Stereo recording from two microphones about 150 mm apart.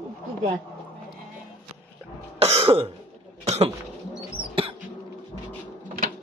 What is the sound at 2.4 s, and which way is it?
Throat clearing, 45° right (ahead or behind).